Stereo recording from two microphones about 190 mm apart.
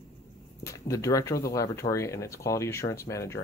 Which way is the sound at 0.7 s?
15° left (ahead or behind).